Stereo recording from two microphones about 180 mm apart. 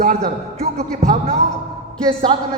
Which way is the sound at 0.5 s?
35° right (ahead or behind).